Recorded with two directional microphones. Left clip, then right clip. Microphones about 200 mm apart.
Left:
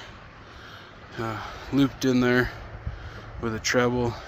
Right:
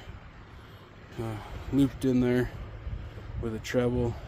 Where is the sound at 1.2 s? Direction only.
10° right (ahead or behind).